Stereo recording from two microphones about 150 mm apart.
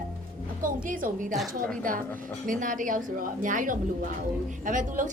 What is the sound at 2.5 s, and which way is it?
A woman's voice, 60° right (ahead or behind).